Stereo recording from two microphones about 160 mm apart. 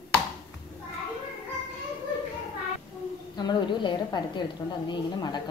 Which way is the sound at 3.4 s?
30° left (ahead or behind).